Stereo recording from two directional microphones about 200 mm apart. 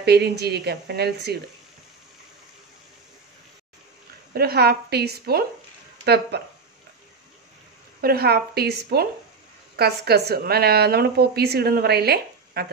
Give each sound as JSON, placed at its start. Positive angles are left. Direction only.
{"t": 0.0, "sound": "speech", "side_deg": -55}
{"t": 4.3, "sound": "a woman's voice", "side_deg": -50}
{"t": 8.0, "sound": "a woman's voice", "side_deg": -50}